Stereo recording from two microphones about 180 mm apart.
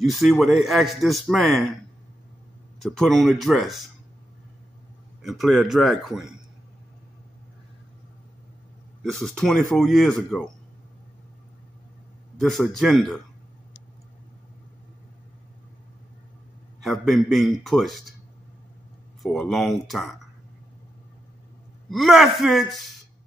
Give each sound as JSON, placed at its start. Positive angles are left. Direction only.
{"t": 0.0, "sound": "a man's voice", "side_deg": 0}
{"t": 2.8, "sound": "a man's voice", "side_deg": 0}
{"t": 5.2, "sound": "a man's voice", "side_deg": 0}
{"t": 9.0, "sound": "a man's voice", "side_deg": 5}
{"t": 12.4, "sound": "a man's voice", "side_deg": 0}
{"t": 16.8, "sound": "a man's voice", "side_deg": 0}
{"t": 19.2, "sound": "a man's voice", "side_deg": 0}
{"t": 21.9, "sound": "a man's voice", "side_deg": 0}